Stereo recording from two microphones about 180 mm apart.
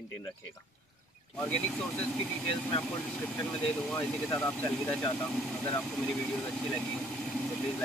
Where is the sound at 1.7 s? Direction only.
5° left (ahead or behind).